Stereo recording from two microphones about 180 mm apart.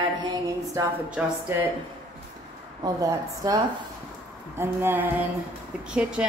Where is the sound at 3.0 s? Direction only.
20° right (ahead or behind).